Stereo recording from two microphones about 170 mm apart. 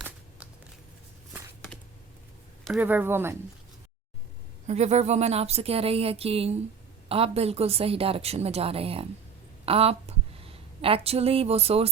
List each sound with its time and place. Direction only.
1.3 s a sound: 5° left (ahead or behind)
2.6 s speech: 5° right (ahead or behind)
4.6 s a woman's voice: 40° right (ahead or behind)